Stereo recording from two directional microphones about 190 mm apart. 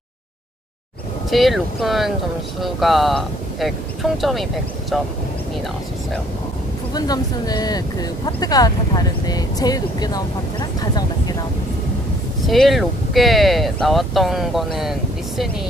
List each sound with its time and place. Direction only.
1.3 s speech: centre (ahead or behind)
6.9 s speech: 20° left (ahead or behind)
12.4 s speech: centre (ahead or behind)